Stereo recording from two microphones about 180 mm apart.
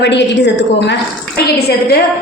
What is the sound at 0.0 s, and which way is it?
Speech, 75° left (ahead or behind).